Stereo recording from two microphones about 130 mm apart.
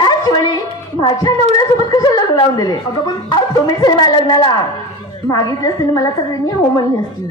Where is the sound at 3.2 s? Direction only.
35° left (ahead or behind).